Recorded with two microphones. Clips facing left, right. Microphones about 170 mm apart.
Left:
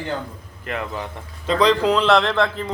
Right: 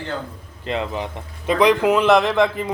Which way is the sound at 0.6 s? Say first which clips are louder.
Right 3 dB; 20° right (ahead or behind).